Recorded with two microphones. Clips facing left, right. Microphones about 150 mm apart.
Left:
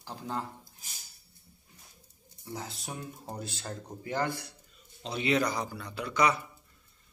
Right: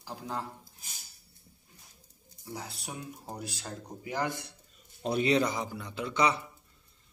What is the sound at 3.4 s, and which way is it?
Speech, 10° right (ahead or behind).